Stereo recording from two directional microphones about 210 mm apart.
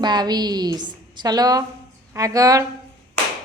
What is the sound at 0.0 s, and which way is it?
A woman's voice, 20° right (ahead or behind).